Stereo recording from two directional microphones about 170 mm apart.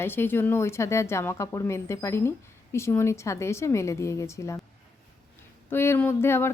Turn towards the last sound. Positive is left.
turn(degrees=15)  # may be behind; listen again after turning